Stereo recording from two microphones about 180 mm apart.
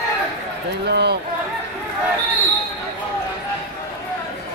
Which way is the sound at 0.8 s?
70° right (ahead or behind).